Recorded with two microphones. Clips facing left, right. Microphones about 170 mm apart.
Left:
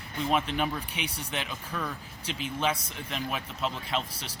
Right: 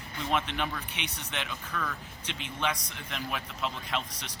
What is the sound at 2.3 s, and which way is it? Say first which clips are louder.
Speech: left 3 dB; 30° left (ahead or behind).